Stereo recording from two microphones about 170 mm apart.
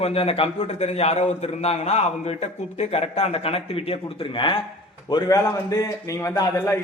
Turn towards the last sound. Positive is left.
turn(degrees=15)  # may be behind; listen again after turning